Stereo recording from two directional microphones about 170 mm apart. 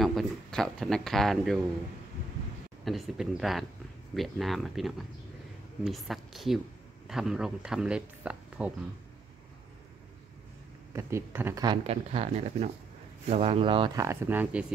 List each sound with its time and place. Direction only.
0.0 s speech: centre (ahead or behind)
2.8 s speech: centre (ahead or behind)
10.9 s speech: 15° right (ahead or behind)
11.6 s speech: 30° right (ahead or behind); by 14.7 s 10° right (ahead or behind)